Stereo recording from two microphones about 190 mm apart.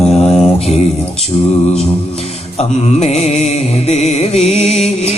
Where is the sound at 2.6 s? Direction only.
35° left (ahead or behind).